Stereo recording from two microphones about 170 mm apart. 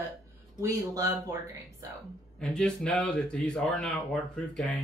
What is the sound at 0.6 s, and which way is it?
Speech, 15° right (ahead or behind).